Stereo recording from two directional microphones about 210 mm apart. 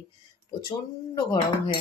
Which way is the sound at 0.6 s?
20° left (ahead or behind).